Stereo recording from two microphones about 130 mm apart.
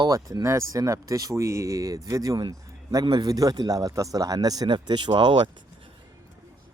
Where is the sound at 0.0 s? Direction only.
30° right (ahead or behind).